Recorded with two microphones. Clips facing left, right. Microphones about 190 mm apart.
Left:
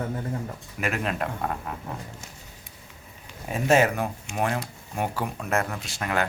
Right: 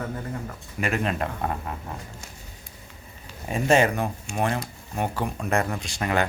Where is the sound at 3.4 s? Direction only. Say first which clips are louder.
Right 1 dB; 5° left (ahead or behind).